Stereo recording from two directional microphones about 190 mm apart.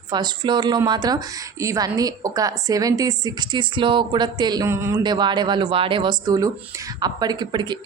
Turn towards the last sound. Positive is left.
turn(degrees=-25)  # may be behind; listen again after turning